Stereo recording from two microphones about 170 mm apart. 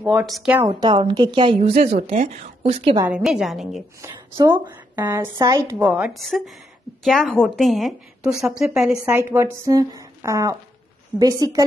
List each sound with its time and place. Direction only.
0.0 s a woman's voice: 10° right (ahead or behind)
0.7 s a woman's voice: 25° right (ahead or behind)
1.7 s a woman's voice: 45° right (ahead or behind)
3.1 s a woman's voice: 5° right (ahead or behind)
4.0 s speech: 15° right (ahead or behind)
4.6 s a sound: 20° right (ahead or behind)
5.0 s a woman's voice: 15° right (ahead or behind)
5.9 s a woman's voice: 5° right (ahead or behind); by 11.6 s 20° right (ahead or behind)